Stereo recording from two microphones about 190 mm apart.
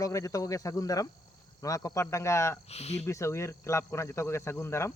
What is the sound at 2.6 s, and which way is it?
Speech, 35° left (ahead or behind).